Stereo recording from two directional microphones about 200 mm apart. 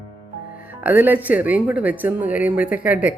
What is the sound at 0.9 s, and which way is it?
Speech, 10° right (ahead or behind).